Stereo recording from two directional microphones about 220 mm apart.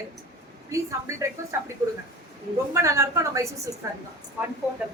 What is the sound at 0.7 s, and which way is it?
A woman's voice, 15° right (ahead or behind).